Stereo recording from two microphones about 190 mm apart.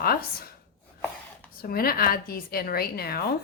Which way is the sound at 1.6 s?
50° left (ahead or behind).